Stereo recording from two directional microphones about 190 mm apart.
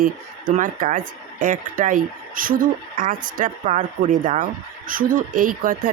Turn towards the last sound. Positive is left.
turn(degrees=-45)  # may be behind; listen again after turning